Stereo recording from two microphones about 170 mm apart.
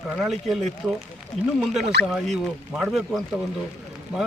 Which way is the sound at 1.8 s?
75° right (ahead or behind).